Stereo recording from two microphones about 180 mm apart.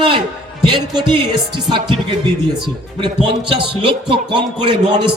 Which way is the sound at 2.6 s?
30° right (ahead or behind).